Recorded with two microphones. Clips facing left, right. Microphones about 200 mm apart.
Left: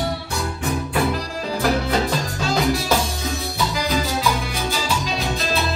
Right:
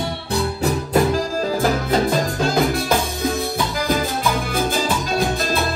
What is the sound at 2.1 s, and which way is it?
Music, 55° right (ahead or behind).